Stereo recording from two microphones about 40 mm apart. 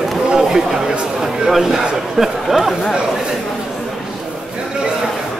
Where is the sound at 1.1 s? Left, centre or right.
Centre.